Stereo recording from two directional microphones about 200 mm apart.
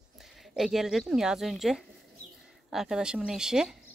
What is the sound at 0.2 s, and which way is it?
A woman's voice, centre (ahead or behind).